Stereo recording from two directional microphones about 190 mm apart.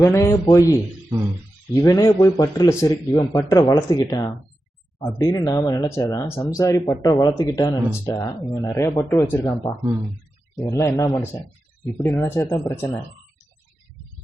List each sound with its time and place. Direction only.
0.0 s speech: 15° left (ahead or behind)